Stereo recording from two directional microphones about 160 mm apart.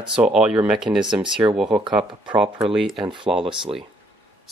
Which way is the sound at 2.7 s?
Centre (ahead or behind).